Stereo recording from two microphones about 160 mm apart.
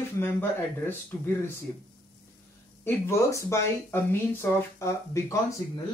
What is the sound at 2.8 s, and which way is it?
Speech, 15° left (ahead or behind).